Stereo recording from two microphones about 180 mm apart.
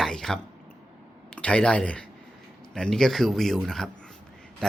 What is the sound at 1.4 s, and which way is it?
Speech, 5° left (ahead or behind).